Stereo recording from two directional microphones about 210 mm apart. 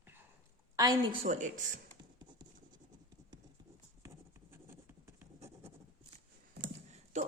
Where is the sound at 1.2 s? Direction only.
35° right (ahead or behind).